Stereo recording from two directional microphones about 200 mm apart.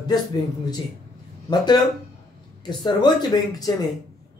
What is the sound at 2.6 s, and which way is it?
Speech, 20° left (ahead or behind).